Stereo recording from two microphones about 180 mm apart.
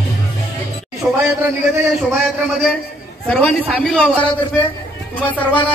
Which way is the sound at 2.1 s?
Centre (ahead or behind).